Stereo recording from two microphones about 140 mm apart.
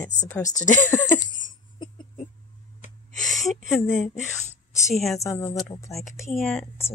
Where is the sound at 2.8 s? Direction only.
65° left (ahead or behind).